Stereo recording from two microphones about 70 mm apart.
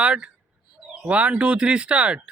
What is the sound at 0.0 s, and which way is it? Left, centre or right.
Speech, centre.